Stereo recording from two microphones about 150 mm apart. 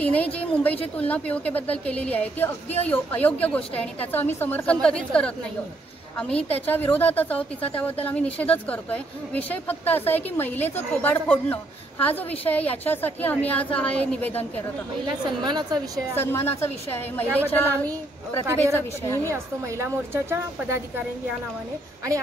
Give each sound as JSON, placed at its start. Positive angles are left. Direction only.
{"t": 0.0, "sound": "a woman's voice", "side_deg": 10}
{"t": 15.0, "sound": "a woman's voice", "side_deg": -30}
{"t": 16.2, "sound": "a woman's voice", "side_deg": 15}
{"t": 19.3, "sound": "a woman's voice", "side_deg": -15}